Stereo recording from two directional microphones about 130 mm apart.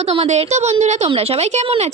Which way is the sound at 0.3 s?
60° right (ahead or behind).